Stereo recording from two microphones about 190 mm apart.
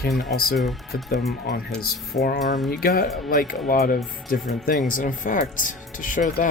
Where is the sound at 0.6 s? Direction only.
Centre (ahead or behind).